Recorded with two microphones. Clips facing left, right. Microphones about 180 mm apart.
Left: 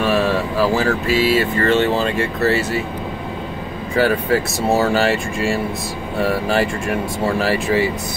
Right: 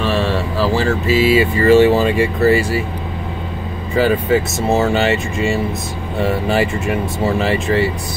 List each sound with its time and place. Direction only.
0.0 s a sound: 10° left (ahead or behind)
0.8 s speech: 5° right (ahead or behind)
3.9 s speech: centre (ahead or behind)